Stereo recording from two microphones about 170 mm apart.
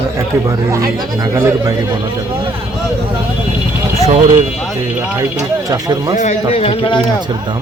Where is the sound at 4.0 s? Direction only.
40° right (ahead or behind).